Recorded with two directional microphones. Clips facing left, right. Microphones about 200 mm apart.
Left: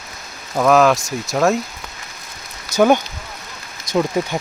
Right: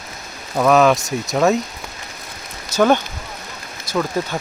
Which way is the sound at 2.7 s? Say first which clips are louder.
Left 1 dB; 10° left (ahead or behind).